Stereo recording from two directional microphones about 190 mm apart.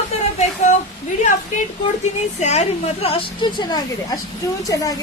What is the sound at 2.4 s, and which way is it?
A woman's voice, 35° left (ahead or behind).